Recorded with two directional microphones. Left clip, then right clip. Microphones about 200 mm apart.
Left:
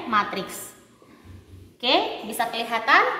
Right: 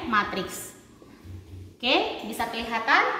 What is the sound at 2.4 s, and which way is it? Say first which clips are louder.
Speech: left 4 dB; 50° left (ahead or behind).